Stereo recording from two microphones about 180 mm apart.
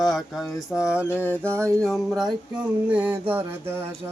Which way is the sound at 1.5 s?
15° right (ahead or behind).